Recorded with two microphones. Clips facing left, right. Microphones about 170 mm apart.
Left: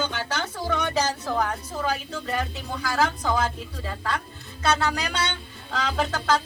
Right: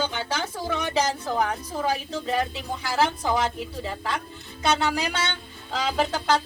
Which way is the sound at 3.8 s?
20° right (ahead or behind).